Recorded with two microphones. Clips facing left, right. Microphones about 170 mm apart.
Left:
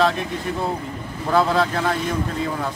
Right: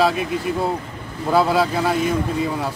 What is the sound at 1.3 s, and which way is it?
Speech, 5° right (ahead or behind).